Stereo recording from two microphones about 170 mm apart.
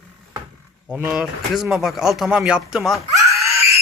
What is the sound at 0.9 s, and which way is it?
A man's voice, 10° right (ahead or behind).